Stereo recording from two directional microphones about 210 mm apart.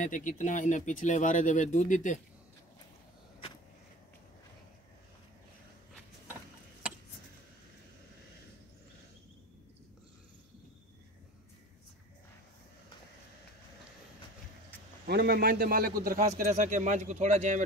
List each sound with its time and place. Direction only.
0.0 s speech: 35° left (ahead or behind)
15.0 s a man's voice: 45° right (ahead or behind)